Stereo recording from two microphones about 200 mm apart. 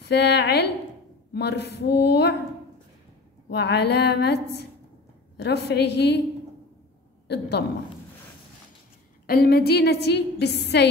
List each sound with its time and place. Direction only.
0.0 s a woman's voice: 55° left (ahead or behind)
3.4 s a woman's voice: 55° left (ahead or behind)
7.2 s a woman's voice: 55° left (ahead or behind)
9.2 s a woman's voice: 50° left (ahead or behind)